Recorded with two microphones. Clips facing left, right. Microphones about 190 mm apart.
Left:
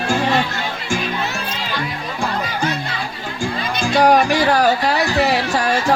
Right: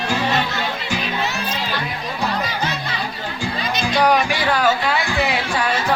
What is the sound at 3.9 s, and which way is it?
Music, 45° left (ahead or behind).